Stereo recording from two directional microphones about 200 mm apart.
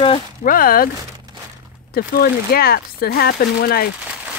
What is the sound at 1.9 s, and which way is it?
Speech, 50° left (ahead or behind).